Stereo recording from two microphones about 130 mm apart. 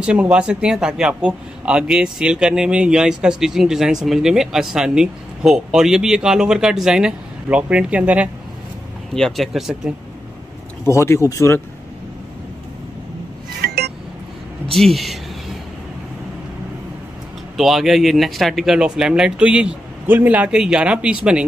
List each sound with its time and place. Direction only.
0.0 s speech: 10° right (ahead or behind)
9.1 s speech: centre (ahead or behind)
10.9 s speech: 20° left (ahead or behind)
14.7 s speech: centre (ahead or behind)
17.6 s speech: centre (ahead or behind)